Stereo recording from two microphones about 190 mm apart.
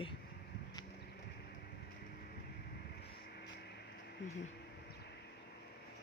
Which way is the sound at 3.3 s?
60° left (ahead or behind).